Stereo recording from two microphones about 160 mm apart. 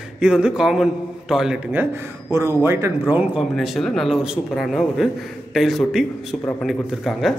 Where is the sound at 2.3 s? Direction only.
15° right (ahead or behind).